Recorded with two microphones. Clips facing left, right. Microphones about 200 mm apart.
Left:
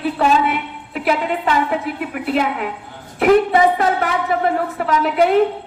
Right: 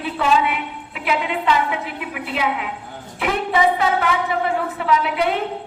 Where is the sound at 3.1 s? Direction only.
50° left (ahead or behind).